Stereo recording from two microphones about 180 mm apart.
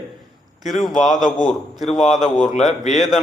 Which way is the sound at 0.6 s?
Centre (ahead or behind).